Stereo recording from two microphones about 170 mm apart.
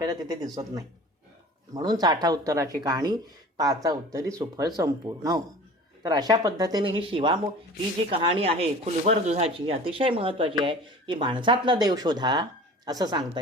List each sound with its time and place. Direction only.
0.0 s speech: 25° right (ahead or behind)